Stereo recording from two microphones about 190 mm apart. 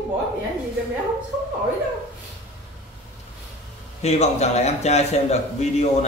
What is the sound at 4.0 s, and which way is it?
A man's voice, 35° left (ahead or behind).